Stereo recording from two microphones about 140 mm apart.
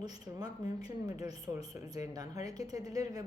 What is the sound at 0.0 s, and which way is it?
A woman's voice, 30° right (ahead or behind).